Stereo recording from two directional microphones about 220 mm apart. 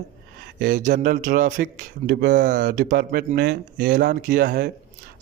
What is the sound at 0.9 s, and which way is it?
A man's voice, 40° right (ahead or behind).